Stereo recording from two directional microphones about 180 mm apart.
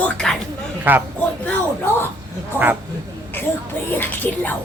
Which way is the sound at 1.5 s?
10° left (ahead or behind).